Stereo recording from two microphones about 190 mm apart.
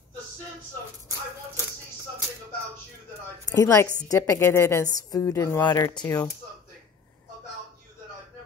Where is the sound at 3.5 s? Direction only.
20° left (ahead or behind).